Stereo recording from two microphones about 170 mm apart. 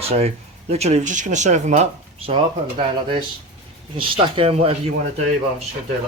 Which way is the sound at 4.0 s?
30° right (ahead or behind).